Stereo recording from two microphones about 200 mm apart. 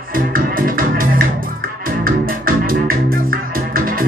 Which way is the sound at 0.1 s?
45° right (ahead or behind).